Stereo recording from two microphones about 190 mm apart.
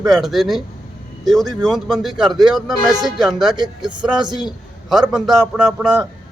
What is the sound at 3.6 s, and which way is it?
Speech, 25° right (ahead or behind).